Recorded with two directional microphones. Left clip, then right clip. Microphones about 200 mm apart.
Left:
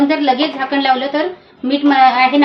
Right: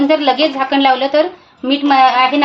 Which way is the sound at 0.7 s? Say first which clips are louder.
Right 2 dB; 55° right (ahead or behind).